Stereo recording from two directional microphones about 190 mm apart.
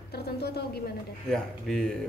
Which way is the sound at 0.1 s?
55° left (ahead or behind).